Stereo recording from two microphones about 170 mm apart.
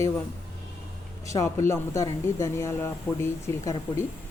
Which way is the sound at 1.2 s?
15° left (ahead or behind).